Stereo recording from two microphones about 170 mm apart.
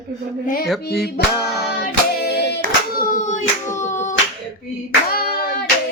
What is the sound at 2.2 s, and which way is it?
Singing, 75° left (ahead or behind).